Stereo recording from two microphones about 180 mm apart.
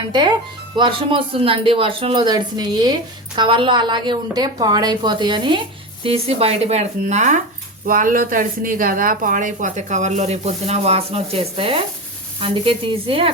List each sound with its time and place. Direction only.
0.1 s a woman's voice: 25° right (ahead or behind)